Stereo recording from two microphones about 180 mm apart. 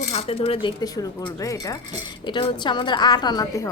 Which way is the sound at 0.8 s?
20° left (ahead or behind).